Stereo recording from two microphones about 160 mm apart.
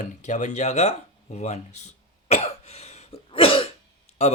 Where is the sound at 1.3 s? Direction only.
45° left (ahead or behind).